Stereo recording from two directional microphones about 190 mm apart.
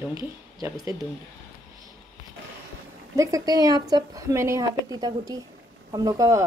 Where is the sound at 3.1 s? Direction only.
20° right (ahead or behind).